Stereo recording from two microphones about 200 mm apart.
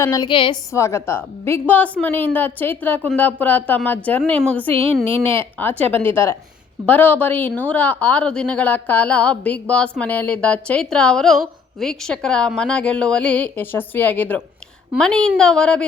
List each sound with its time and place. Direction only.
0.0 s a woman's voice: 15° left (ahead or behind)
0.7 s a woman's voice: 15° left (ahead or behind)